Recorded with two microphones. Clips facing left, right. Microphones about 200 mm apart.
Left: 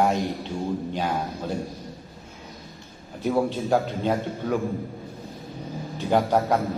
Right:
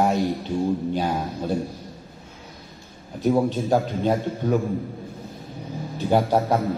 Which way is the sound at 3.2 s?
15° right (ahead or behind).